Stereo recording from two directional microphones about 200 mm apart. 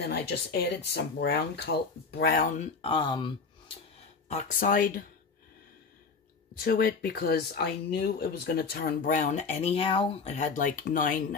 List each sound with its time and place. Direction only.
0.0 s speech: 55° left (ahead or behind); by 3.7 s 25° left (ahead or behind)
4.3 s speech: 40° left (ahead or behind)
6.6 s speech: 50° left (ahead or behind)